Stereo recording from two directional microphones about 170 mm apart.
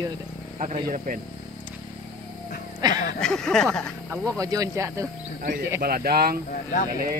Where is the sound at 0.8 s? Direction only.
50° right (ahead or behind).